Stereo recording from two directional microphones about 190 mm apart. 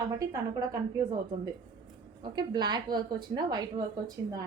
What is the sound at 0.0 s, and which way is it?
A woman's voice, 20° right (ahead or behind).